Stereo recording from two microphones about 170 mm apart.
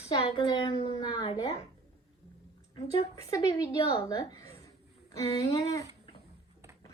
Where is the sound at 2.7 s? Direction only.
20° left (ahead or behind).